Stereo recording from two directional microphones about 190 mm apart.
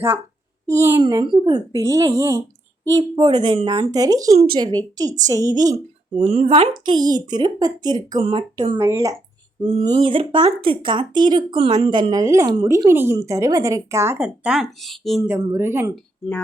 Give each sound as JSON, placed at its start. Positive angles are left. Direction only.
{"t": 0.7, "sound": "speech", "side_deg": -15}
{"t": 1.0, "sound": "speech", "side_deg": -25}
{"t": 5.7, "sound": "speech", "side_deg": -35}
{"t": 9.6, "sound": "speech", "side_deg": -25}
{"t": 15.2, "sound": "speech", "side_deg": -15}